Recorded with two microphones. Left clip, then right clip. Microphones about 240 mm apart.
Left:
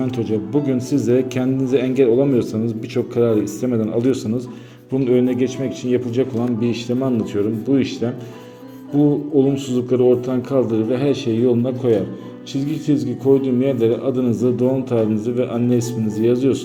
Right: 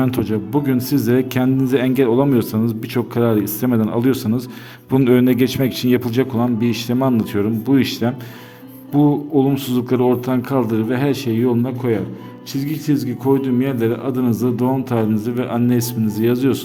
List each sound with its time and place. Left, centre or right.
0.0 s a man's voice: right
4.9 s speech: right
6.0 s a man's voice: right
9.4 s a man's voice: right